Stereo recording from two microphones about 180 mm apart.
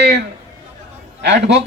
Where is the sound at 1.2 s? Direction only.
70° right (ahead or behind).